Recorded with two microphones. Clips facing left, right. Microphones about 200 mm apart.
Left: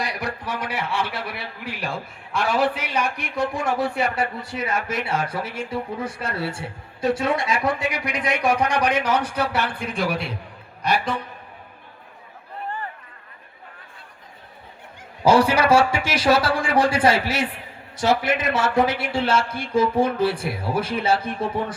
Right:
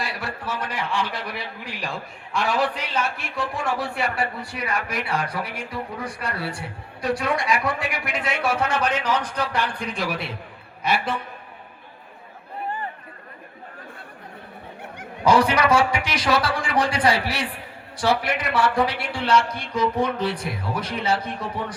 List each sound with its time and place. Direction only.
0.0 s a man's voice: 20° left (ahead or behind); by 10.3 s centre (ahead or behind)
15.2 s a man's voice: 30° left (ahead or behind)